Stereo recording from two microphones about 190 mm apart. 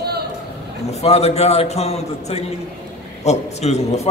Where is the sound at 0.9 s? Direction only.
35° left (ahead or behind).